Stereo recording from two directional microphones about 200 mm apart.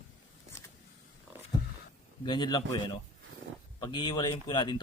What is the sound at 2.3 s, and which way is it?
Speech, 20° left (ahead or behind).